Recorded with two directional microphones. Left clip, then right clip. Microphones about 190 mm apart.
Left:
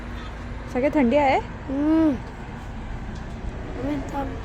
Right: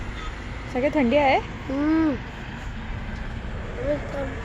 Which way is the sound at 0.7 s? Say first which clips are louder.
Left 1 dB; 5° left (ahead or behind).